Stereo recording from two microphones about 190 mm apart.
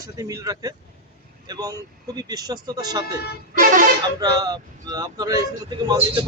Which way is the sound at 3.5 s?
45° right (ahead or behind).